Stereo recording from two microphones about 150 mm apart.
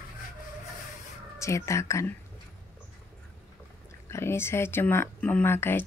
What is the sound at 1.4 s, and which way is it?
Speech, 20° left (ahead or behind).